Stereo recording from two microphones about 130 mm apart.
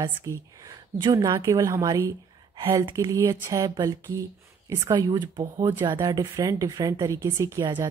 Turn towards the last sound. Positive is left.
turn(degrees=-30)  # may be behind; listen again after turning